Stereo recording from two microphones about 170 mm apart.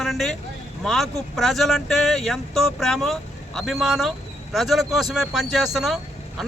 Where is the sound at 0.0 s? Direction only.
Centre (ahead or behind).